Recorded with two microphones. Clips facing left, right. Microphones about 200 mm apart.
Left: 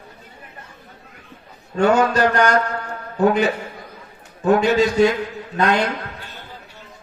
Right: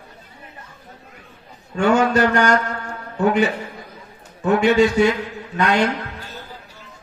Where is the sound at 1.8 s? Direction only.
40° left (ahead or behind).